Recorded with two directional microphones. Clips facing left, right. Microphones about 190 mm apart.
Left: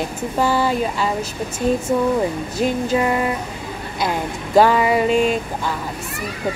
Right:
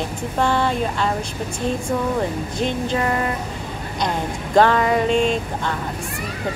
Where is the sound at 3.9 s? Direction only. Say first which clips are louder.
Left 1 dB; 5° left (ahead or behind).